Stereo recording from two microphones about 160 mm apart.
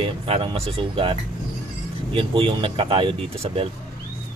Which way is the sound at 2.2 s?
35° right (ahead or behind).